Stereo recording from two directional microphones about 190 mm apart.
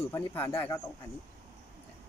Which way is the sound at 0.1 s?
10° left (ahead or behind).